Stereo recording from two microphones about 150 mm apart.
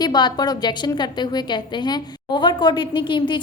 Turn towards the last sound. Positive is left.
turn(degrees=35)  # may be behind; listen again after turning